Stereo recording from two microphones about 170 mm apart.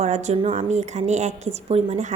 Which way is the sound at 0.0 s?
40° right (ahead or behind).